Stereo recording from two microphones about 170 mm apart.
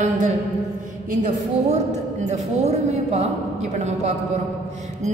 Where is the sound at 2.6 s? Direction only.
40° right (ahead or behind).